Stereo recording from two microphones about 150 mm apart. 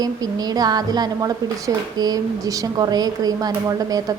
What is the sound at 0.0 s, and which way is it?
A woman's voice, 25° right (ahead or behind).